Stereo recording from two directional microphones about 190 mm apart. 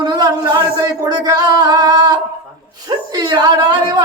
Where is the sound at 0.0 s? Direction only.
20° right (ahead or behind).